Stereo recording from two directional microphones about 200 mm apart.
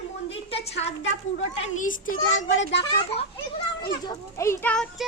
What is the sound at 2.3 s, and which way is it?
Speech, 70° left (ahead or behind).